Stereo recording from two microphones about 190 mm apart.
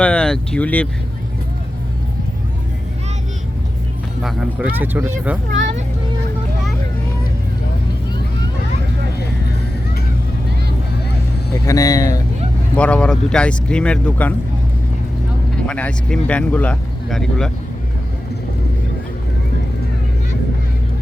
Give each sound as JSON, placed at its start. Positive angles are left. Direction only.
{"t": 0.0, "sound": "speech", "side_deg": 5}
{"t": 4.2, "sound": "speech", "side_deg": -5}
{"t": 11.6, "sound": "speech", "side_deg": 15}
{"t": 12.7, "sound": "speech", "side_deg": 5}
{"t": 15.5, "sound": "speech", "side_deg": 5}